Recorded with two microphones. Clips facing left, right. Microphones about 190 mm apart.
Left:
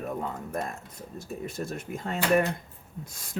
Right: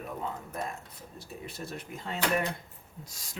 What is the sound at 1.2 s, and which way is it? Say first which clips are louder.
Speech: left 7 dB; 45° left (ahead or behind).